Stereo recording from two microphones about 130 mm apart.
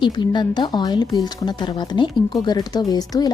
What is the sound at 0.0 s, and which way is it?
Speech, 35° left (ahead or behind).